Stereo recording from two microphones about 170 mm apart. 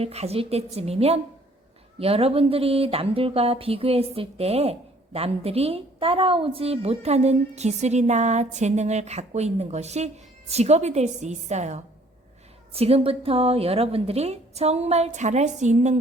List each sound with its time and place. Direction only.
0.0 s speech: 40° right (ahead or behind)